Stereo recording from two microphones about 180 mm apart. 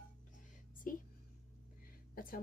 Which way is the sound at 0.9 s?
50° left (ahead or behind).